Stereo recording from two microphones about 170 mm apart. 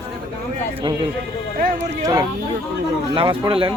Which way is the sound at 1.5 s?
55° right (ahead or behind).